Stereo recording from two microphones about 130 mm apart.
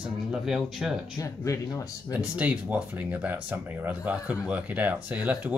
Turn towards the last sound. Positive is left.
turn(degrees=-10)  # may be behind; listen again after turning